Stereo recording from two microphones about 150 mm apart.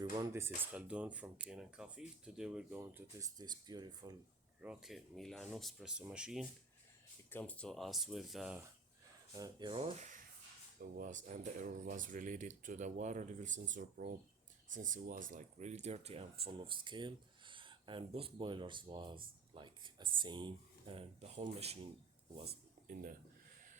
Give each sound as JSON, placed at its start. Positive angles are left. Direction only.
{"t": 0.0, "sound": "speech", "side_deg": -20}
{"t": 2.8, "sound": "speech", "side_deg": -15}
{"t": 4.6, "sound": "speech", "side_deg": -5}
{"t": 7.3, "sound": "speech", "side_deg": 10}
{"t": 9.3, "sound": "speech", "side_deg": -25}
{"t": 10.8, "sound": "speech", "side_deg": -80}
{"t": 11.1, "sound": "speech", "side_deg": -55}
{"t": 16.4, "sound": "speech", "side_deg": -35}
{"t": 22.4, "sound": "speech", "side_deg": -75}